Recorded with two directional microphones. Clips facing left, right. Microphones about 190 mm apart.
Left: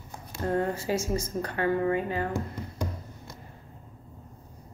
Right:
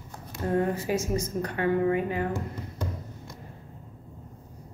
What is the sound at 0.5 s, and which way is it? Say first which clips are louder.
A woman's voice: right 2 dB; 15° right (ahead or behind).